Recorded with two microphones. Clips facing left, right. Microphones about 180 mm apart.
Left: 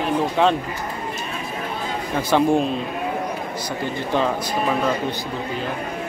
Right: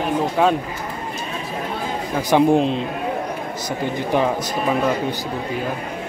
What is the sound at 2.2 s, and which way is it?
Speech, 15° right (ahead or behind).